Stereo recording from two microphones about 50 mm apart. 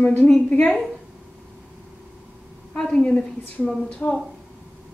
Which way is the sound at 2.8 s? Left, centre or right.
Left.